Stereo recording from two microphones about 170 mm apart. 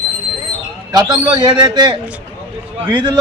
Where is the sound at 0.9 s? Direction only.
25° right (ahead or behind).